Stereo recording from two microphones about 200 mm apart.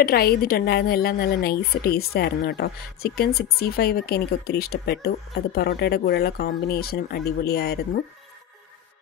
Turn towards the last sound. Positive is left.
turn(degrees=55)  # may be behind; listen again after turning